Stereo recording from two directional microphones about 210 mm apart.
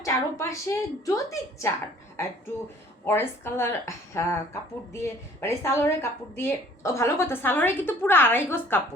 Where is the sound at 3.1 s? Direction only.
10° left (ahead or behind).